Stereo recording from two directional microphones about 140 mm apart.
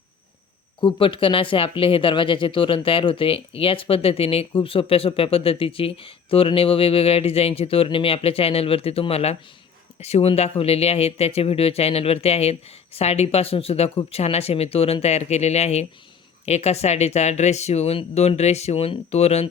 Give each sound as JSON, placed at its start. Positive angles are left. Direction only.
{"t": 0.8, "sound": "speech", "side_deg": 35}